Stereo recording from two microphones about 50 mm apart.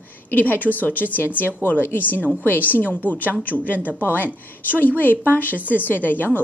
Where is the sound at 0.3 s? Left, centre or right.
Left.